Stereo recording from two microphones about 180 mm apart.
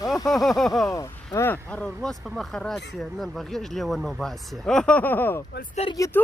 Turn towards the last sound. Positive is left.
turn(degrees=15)  # may be behind; listen again after turning